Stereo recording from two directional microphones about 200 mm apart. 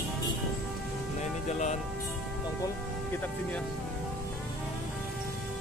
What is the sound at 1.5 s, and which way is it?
Speech, 35° left (ahead or behind).